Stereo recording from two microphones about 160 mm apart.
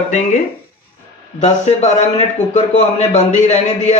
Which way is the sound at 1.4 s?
45° left (ahead or behind).